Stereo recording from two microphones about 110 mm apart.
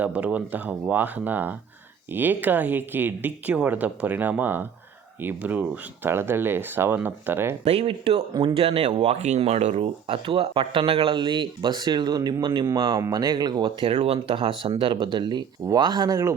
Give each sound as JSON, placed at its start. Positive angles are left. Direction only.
{"t": 0.0, "sound": "speech", "side_deg": -15}
{"t": 7.6, "sound": "speech", "side_deg": -65}
{"t": 8.3, "sound": "speech", "side_deg": -40}
{"t": 8.5, "sound": "speech", "side_deg": -60}
{"t": 13.0, "sound": "speech", "side_deg": -30}
{"t": 13.8, "sound": "speech", "side_deg": -60}